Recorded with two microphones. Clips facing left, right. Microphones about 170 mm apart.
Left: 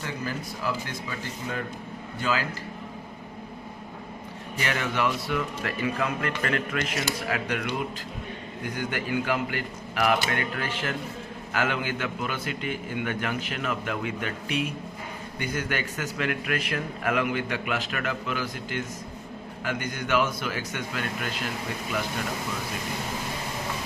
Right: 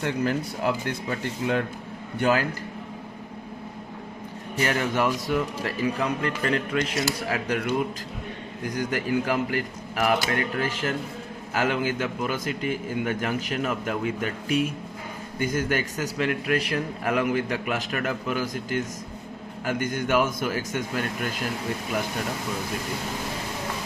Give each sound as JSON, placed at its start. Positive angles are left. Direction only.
{"t": 0.0, "sound": "speech", "side_deg": -60}
{"t": 4.6, "sound": "a man's voice", "side_deg": -40}